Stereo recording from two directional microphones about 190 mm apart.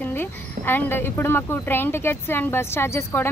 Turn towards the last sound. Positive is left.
turn(degrees=10)  # may be behind; listen again after turning